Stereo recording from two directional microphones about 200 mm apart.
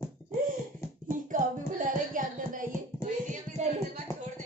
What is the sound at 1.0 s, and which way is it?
Music, 40° right (ahead or behind).